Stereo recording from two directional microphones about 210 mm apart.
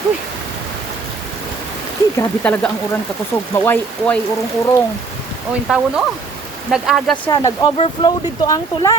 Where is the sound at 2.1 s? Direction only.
10° left (ahead or behind).